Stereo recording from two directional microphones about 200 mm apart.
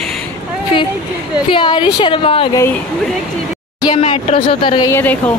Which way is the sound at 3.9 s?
30° left (ahead or behind).